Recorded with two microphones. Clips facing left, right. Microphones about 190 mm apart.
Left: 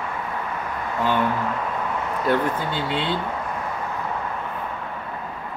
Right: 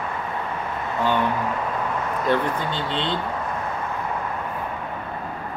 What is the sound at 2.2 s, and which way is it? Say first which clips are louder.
Speech: left 1 dB; 5° left (ahead or behind).